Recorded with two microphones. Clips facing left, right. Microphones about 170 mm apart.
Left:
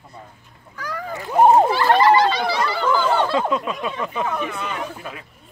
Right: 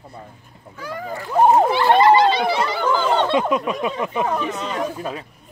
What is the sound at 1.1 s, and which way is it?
Speech, 20° left (ahead or behind).